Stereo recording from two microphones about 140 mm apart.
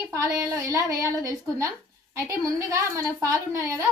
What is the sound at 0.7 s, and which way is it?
A woman's voice, 25° right (ahead or behind).